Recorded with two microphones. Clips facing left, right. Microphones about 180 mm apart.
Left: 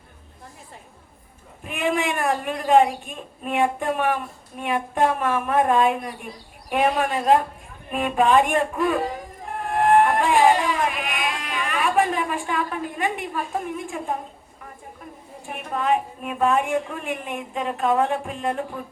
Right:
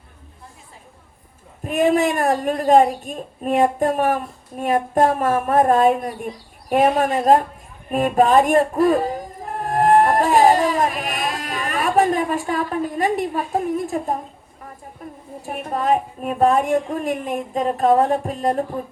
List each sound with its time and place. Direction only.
1.6 s a woman's voice: 40° right (ahead or behind)
9.5 s music: 40° right (ahead or behind)
15.4 s a woman's voice: 40° right (ahead or behind)